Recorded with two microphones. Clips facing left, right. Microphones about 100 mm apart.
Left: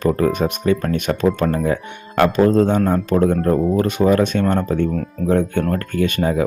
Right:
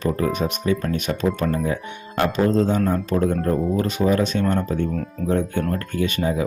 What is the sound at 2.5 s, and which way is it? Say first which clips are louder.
Speech: left 4 dB; 55° left (ahead or behind).